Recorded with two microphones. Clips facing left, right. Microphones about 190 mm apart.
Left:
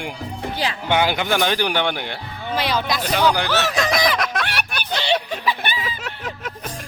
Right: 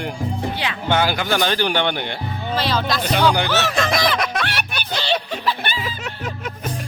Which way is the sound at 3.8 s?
Centre (ahead or behind).